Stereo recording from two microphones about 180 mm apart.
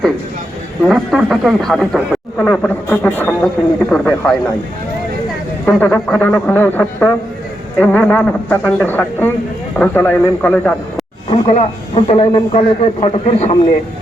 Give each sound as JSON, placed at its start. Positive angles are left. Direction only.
{"t": 0.9, "sound": "speech", "side_deg": 0}
{"t": 5.6, "sound": "a man's voice", "side_deg": 10}
{"t": 11.3, "sound": "speech", "side_deg": 35}